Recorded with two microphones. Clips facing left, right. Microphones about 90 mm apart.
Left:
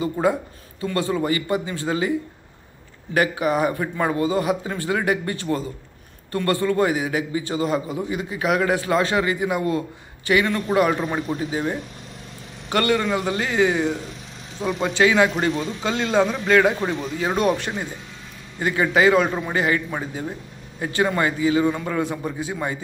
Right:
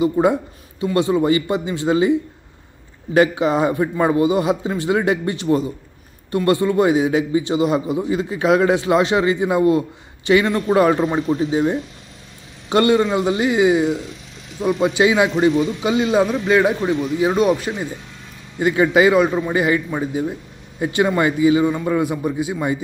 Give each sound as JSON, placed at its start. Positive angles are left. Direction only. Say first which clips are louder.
{"t": 0.0, "sound": "a man's voice", "louder": "right 5 dB", "side_deg": -20}
{"t": 3.2, "sound": "a man's voice", "louder": "right 5 dB", "side_deg": -25}
{"t": 8.1, "sound": "a man's voice", "louder": "right 6 dB", "side_deg": -30}
{"t": 11.5, "sound": "a man's voice", "louder": "right 6 dB", "side_deg": -20}
{"t": 18.6, "sound": "a man's voice", "louder": "right 4 dB", "side_deg": -15}
{"t": 19.2, "sound": "a man's voice", "louder": "right 5 dB", "side_deg": 0}
{"t": 19.5, "sound": "a man's voice", "louder": "right 4 dB", "side_deg": -15}